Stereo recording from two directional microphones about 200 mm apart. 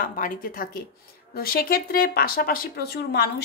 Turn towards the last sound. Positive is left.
turn(degrees=50)  # may be behind; listen again after turning